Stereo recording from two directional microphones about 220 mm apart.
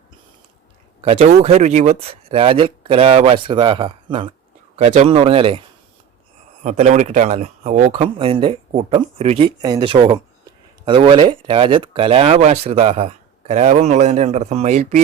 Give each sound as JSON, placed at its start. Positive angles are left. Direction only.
{"t": 1.0, "sound": "speech", "side_deg": -30}
{"t": 8.2, "sound": "speech", "side_deg": -25}